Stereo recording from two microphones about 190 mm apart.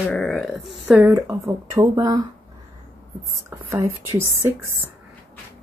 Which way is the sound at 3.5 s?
15° right (ahead or behind).